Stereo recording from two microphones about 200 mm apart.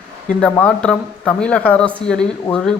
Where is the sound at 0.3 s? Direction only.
5° left (ahead or behind).